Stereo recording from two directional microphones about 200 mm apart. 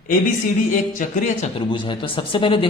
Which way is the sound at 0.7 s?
40° left (ahead or behind).